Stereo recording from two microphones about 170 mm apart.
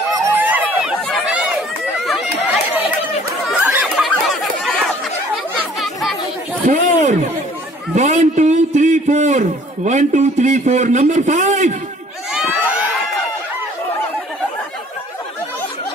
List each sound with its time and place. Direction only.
0.1 s a sound: 10° right (ahead or behind)
1.0 s chatter: centre (ahead or behind)
3.4 s a sound: 10° right (ahead or behind)
6.7 s a man's voice: 50° right (ahead or behind)
7.9 s a man's voice: 40° right (ahead or behind)
12.3 s children shouting: 5° right (ahead or behind)